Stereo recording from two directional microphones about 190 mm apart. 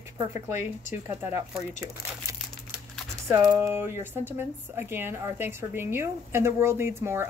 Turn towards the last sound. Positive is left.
turn(degrees=-15)  # may be behind; listen again after turning